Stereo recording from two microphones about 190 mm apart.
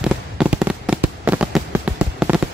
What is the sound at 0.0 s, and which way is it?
Fireworks, 5° right (ahead or behind).